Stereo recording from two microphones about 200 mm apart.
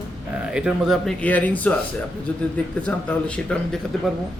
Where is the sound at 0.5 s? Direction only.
5° right (ahead or behind).